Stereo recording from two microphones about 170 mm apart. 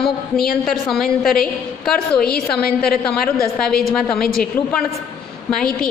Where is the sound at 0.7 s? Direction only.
Centre (ahead or behind).